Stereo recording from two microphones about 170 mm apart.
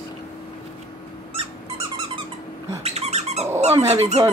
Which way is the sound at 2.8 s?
40° right (ahead or behind).